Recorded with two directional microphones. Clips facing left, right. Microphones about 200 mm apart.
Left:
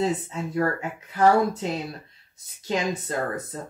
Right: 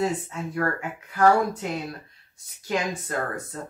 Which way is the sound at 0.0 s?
25° left (ahead or behind).